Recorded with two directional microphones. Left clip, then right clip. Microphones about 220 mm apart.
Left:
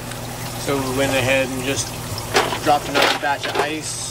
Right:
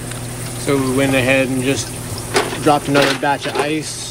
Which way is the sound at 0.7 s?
5° left (ahead or behind).